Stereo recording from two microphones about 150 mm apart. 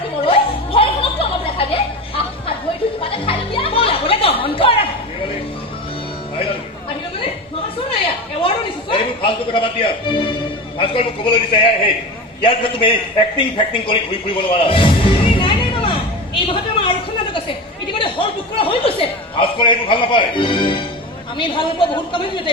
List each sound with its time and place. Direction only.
0.3 s chuckle: 35° left (ahead or behind)
3.0 s music: 35° left (ahead or behind)
8.4 s a sound: 35° left (ahead or behind)
10.1 s music: 35° left (ahead or behind)
10.8 s a man's voice: 35° left (ahead or behind)
14.3 s music: 35° left (ahead or behind)
17.9 s chuckle: 35° left (ahead or behind)
21.3 s a man's voice: 35° left (ahead or behind)